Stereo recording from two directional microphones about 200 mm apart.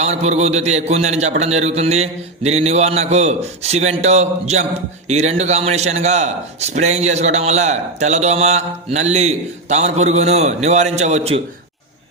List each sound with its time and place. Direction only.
0.0 s a man's voice: 35° right (ahead or behind)